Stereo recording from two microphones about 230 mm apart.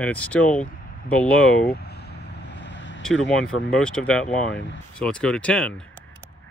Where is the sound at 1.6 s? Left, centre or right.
Left.